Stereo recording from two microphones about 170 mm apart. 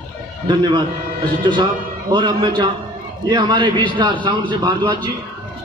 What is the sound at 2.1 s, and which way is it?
A man's voice, 25° right (ahead or behind).